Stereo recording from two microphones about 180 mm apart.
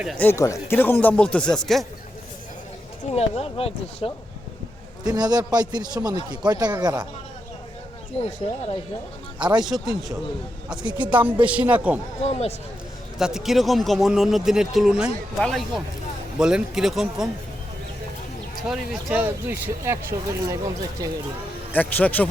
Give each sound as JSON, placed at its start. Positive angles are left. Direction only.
{"t": 0.2, "sound": "speech", "side_deg": 15}
{"t": 3.2, "sound": "speech", "side_deg": 35}
{"t": 5.0, "sound": "a man's voice", "side_deg": -20}
{"t": 8.4, "sound": "speech", "side_deg": 35}
{"t": 9.4, "sound": "a man's voice", "side_deg": -25}
{"t": 9.6, "sound": "speech", "side_deg": 0}
{"t": 10.8, "sound": "a man's voice", "side_deg": -25}
{"t": 11.3, "sound": "speech", "side_deg": -5}
{"t": 12.2, "sound": "speech", "side_deg": 35}
{"t": 13.1, "sound": "speech", "side_deg": 0}
{"t": 18.7, "sound": "a man's voice", "side_deg": -5}
{"t": 21.7, "sound": "speech", "side_deg": 10}